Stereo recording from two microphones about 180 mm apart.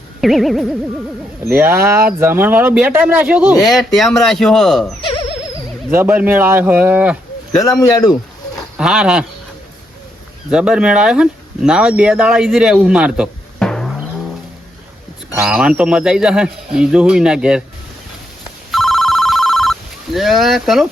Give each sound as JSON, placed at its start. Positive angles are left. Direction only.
{"t": 0.2, "sound": "speech", "side_deg": 0}
{"t": 1.5, "sound": "speech", "side_deg": -10}
{"t": 5.9, "sound": "speech", "side_deg": -10}
{"t": 7.6, "sound": "speech", "side_deg": 20}
{"t": 8.5, "sound": "speech", "side_deg": -5}
{"t": 10.5, "sound": "speech", "side_deg": -5}
{"t": 13.6, "sound": "a sound", "side_deg": 5}
{"t": 15.4, "sound": "speech", "side_deg": -5}
{"t": 18.7, "sound": "telephone bell ringing", "side_deg": 0}
{"t": 20.1, "sound": "speech", "side_deg": 0}